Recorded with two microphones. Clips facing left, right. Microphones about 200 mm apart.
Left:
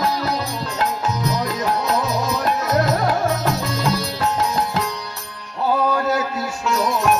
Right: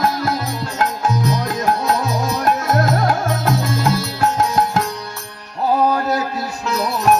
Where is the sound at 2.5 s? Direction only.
50° right (ahead or behind).